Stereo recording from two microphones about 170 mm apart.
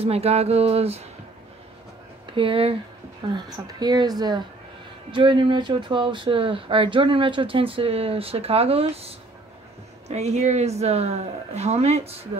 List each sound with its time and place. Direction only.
0.0 s speech: 35° right (ahead or behind)
2.2 s speech: 30° right (ahead or behind)